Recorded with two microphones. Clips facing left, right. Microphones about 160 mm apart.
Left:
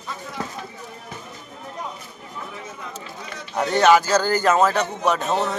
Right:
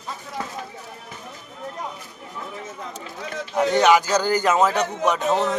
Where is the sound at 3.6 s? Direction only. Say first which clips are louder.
Left 1 dB; 15° right (ahead or behind).